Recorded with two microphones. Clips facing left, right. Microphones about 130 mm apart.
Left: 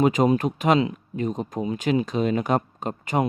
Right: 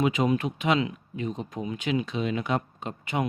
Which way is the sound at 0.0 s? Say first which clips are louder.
Left 5 dB; 40° left (ahead or behind).